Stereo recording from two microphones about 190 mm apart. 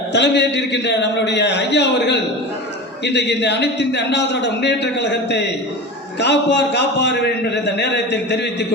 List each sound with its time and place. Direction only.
0.1 s speech: 65° left (ahead or behind)